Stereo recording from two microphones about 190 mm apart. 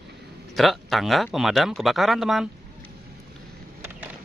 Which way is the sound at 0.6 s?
Centre (ahead or behind).